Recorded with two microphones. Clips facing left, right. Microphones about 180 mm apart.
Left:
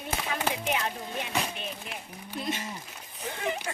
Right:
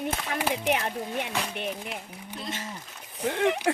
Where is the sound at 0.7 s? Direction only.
60° right (ahead or behind).